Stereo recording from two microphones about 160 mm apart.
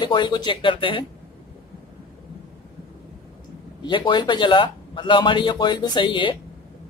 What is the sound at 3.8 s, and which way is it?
A man's voice, 30° left (ahead or behind).